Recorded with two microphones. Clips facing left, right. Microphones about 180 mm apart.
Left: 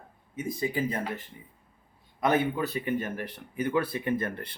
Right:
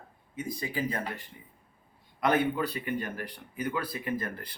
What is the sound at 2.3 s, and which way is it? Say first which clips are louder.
Speech: left 1 dB; 25° left (ahead or behind).